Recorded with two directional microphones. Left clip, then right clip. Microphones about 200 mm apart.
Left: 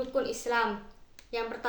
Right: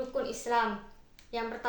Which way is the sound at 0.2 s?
20° left (ahead or behind).